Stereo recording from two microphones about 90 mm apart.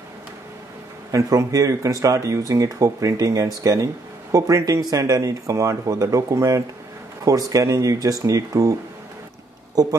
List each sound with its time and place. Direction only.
1.1 s speech: 40° right (ahead or behind)
9.8 s speech: 40° right (ahead or behind)